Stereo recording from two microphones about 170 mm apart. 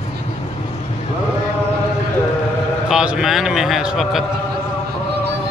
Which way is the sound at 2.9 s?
5° right (ahead or behind).